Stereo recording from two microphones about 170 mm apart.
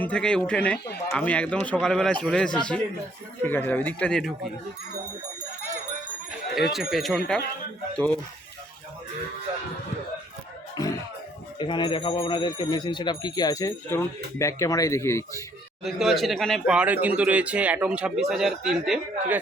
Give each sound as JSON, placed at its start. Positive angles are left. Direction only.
{"t": 0.0, "sound": "a man's voice", "side_deg": 5}
{"t": 6.6, "sound": "a man's voice", "side_deg": 0}
{"t": 10.8, "sound": "music", "side_deg": 20}
{"t": 11.6, "sound": "speech", "side_deg": 30}
{"t": 15.8, "sound": "a man's voice", "side_deg": 0}